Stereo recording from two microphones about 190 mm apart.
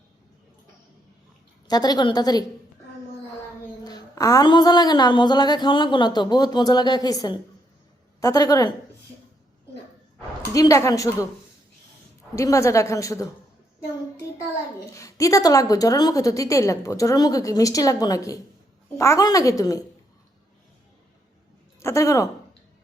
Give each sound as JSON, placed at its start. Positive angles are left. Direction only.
{"t": 1.6, "sound": "a woman's voice", "side_deg": 20}
{"t": 3.8, "sound": "a woman's voice", "side_deg": 20}
{"t": 10.5, "sound": "a woman's voice", "side_deg": 15}
{"t": 12.4, "sound": "a woman's voice", "side_deg": 15}
{"t": 14.9, "sound": "a woman's voice", "side_deg": 15}
{"t": 21.8, "sound": "a woman's voice", "side_deg": 15}